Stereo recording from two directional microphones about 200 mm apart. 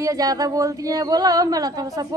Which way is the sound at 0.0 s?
15° right (ahead or behind).